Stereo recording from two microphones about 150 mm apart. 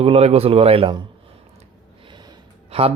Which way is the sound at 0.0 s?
40° right (ahead or behind).